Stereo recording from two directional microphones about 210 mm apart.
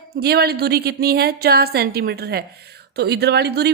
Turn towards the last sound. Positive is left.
turn(degrees=-50)  # may be behind; listen again after turning